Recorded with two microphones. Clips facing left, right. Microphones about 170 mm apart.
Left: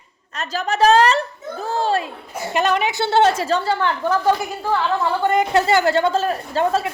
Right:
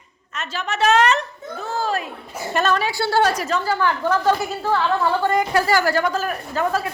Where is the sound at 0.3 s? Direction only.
35° left (ahead or behind).